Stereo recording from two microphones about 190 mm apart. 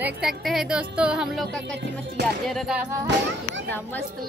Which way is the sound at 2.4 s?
Centre (ahead or behind).